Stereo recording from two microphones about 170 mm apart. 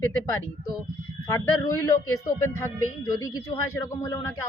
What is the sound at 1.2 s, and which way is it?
Speech, 15° left (ahead or behind).